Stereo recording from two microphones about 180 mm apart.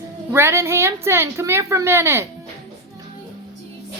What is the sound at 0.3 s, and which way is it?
A woman's voice, 15° right (ahead or behind).